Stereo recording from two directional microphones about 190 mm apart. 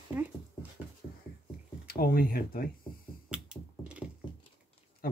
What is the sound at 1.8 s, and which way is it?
Speech, 50° left (ahead or behind).